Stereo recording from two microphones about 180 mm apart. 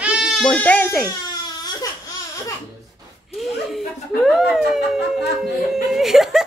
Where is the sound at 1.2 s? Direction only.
20° left (ahead or behind).